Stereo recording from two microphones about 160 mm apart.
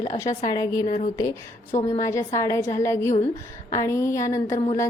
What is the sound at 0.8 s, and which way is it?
Speech, 45° left (ahead or behind).